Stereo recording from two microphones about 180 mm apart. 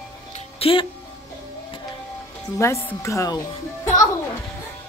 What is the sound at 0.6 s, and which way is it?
Speech, 30° left (ahead or behind).